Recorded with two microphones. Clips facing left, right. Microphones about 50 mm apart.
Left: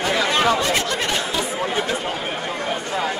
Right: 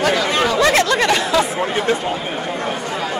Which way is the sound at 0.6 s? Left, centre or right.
Right.